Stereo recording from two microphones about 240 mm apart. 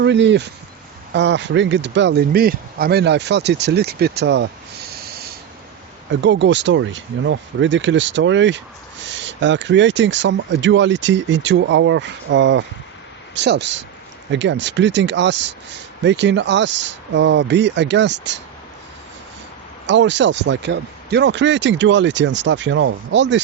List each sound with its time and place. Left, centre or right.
0.0 s speech: right
6.1 s speech: right
19.9 s speech: right